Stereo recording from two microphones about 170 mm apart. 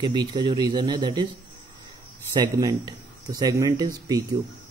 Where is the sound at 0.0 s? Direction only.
25° right (ahead or behind).